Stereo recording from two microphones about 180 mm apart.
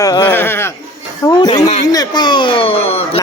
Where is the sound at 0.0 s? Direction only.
20° left (ahead or behind).